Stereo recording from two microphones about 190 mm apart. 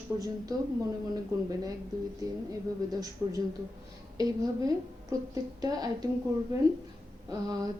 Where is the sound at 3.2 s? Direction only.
10° right (ahead or behind).